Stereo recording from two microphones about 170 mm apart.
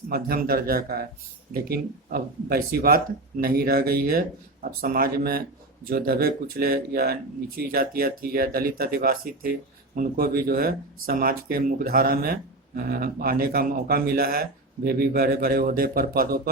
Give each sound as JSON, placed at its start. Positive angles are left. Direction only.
{"t": 0.1, "sound": "speech", "side_deg": -60}